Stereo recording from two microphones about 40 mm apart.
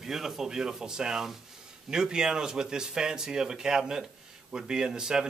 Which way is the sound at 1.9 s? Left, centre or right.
Centre.